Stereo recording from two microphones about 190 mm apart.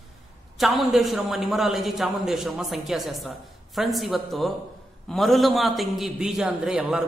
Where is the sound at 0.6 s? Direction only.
Centre (ahead or behind).